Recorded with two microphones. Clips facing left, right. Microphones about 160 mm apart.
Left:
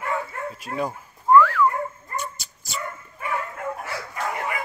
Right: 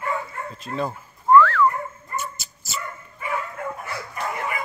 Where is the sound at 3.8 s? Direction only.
80° left.